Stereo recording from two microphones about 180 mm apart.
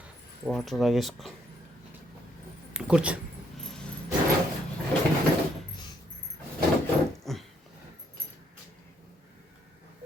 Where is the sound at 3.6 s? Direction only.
5° left (ahead or behind).